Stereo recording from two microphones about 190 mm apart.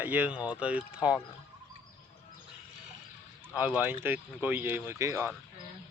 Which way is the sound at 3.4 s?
10° right (ahead or behind).